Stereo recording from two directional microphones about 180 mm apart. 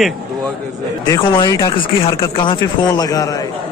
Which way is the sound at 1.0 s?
20° left (ahead or behind).